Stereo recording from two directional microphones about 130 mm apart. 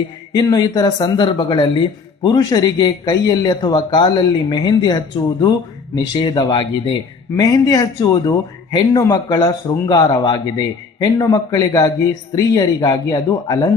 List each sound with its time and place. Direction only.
0.3 s speech: 30° left (ahead or behind)